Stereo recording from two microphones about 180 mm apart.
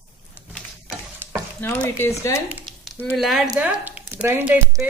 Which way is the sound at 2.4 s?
5° right (ahead or behind).